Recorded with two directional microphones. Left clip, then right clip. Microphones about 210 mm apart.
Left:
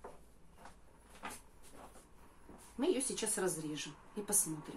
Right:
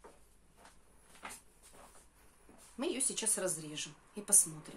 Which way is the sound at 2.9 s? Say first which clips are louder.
Left 1 dB; 50° right (ahead or behind).